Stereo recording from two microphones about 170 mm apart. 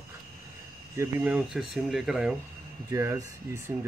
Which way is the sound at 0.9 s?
10° right (ahead or behind).